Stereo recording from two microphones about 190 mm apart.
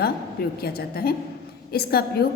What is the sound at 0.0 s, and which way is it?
A woman's voice, 55° left (ahead or behind).